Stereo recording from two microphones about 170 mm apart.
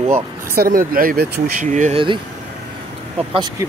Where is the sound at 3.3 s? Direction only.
25° right (ahead or behind).